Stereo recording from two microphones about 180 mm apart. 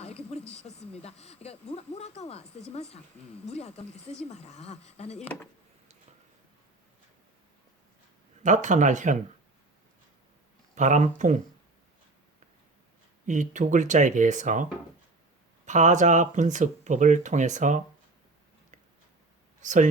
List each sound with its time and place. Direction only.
0.0 s speech: 35° left (ahead or behind)
8.4 s speech: 45° right (ahead or behind)
10.8 s speech: 45° right (ahead or behind)
13.2 s speech: 45° right (ahead or behind)
19.6 s speech: 45° right (ahead or behind)